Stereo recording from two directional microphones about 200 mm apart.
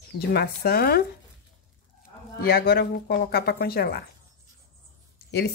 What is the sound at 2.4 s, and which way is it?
A woman's voice, 50° left (ahead or behind).